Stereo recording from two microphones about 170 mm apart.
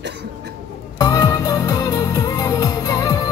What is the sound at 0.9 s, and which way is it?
Music, 20° left (ahead or behind).